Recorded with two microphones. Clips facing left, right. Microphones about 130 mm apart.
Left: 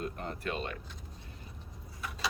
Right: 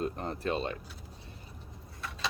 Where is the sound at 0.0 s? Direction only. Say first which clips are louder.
Right 4 dB; 30° right (ahead or behind).